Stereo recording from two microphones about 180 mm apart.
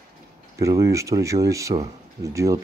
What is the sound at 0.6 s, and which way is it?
Speech, 15° right (ahead or behind).